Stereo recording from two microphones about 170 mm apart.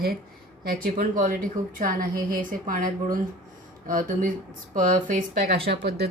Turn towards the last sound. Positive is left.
turn(degrees=-70)  # may be behind; listen again after turning